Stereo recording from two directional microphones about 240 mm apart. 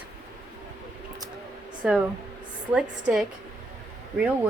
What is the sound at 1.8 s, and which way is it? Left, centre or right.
A woman's voice, centre.